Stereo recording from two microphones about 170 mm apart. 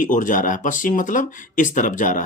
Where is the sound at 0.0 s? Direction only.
50° left (ahead or behind).